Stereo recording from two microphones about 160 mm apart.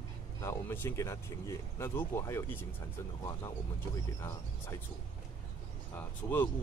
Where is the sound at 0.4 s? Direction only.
15° left (ahead or behind).